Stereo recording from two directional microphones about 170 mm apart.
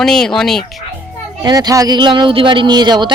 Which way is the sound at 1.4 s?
20° right (ahead or behind).